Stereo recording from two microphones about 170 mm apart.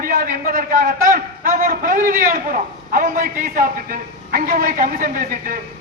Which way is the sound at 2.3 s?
55° right (ahead or behind).